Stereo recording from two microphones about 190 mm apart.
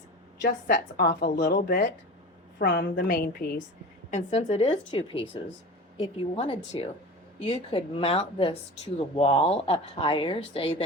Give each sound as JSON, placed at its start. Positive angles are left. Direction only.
{"t": 0.7, "sound": "a woman's voice", "side_deg": 50}
{"t": 4.1, "sound": "a woman's voice", "side_deg": 35}